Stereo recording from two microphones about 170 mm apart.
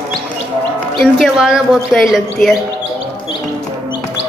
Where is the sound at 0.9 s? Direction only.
Centre (ahead or behind).